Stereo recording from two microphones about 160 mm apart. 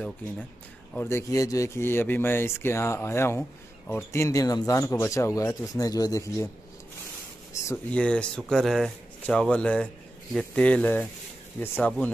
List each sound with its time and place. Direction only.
0.9 s speech: 15° left (ahead or behind)
7.6 s speech: 10° left (ahead or behind)